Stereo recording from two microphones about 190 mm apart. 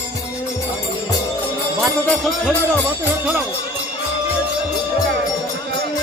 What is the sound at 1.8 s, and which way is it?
Music, 5° left (ahead or behind).